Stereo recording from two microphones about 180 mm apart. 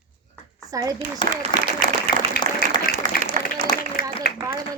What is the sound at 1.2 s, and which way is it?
Speech, 25° left (ahead or behind).